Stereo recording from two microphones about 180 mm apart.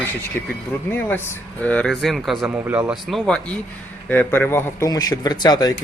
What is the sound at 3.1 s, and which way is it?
A man's voice, 5° left (ahead or behind).